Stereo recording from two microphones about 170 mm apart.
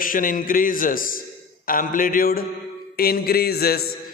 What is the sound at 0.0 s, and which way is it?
A man's voice, 55° left (ahead or behind).